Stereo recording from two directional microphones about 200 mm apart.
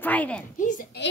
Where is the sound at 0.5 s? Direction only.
40° left (ahead or behind).